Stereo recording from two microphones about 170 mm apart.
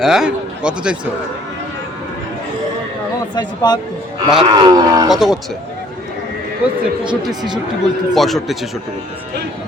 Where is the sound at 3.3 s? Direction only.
25° left (ahead or behind).